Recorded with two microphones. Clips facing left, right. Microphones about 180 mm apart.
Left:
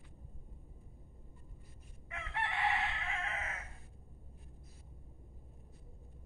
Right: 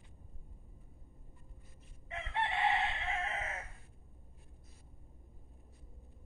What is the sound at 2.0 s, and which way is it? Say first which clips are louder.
Chicken: right 3 dB; 25° right (ahead or behind).